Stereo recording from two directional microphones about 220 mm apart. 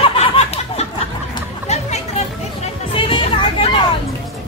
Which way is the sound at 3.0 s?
25° left (ahead or behind).